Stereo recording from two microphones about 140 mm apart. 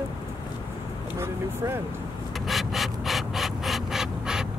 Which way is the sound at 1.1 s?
20° right (ahead or behind).